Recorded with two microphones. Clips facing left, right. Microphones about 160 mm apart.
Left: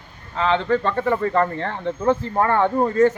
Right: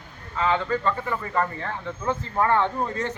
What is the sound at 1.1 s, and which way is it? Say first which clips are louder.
Speech: left 7 dB; 55° left (ahead or behind).